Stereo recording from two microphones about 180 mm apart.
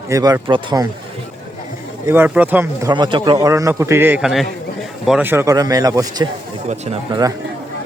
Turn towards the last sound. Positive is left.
turn(degrees=-25)  # may be behind; listen again after turning